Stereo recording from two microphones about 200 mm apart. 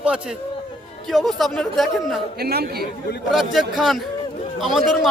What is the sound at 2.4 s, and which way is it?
Speech, 50° right (ahead or behind).